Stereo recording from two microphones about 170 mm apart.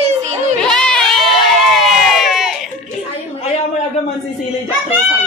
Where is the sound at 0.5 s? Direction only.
5° left (ahead or behind).